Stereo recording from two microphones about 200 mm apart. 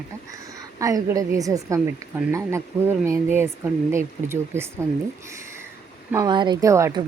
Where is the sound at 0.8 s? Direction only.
15° right (ahead or behind).